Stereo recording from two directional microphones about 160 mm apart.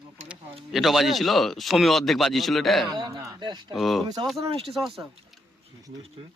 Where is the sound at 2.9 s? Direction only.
25° right (ahead or behind).